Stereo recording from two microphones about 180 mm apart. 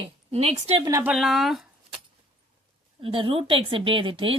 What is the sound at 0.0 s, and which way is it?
Speech, 35° right (ahead or behind).